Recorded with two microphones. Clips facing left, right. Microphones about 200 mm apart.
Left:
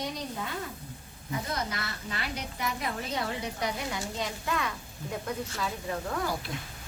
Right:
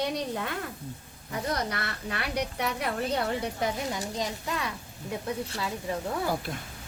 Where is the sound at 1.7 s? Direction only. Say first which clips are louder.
Right 3 dB; 60° right (ahead or behind).